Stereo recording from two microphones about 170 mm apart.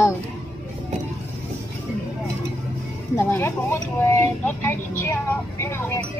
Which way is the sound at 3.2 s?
15° left (ahead or behind).